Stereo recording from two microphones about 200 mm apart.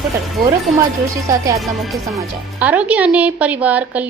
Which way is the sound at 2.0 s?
10° right (ahead or behind).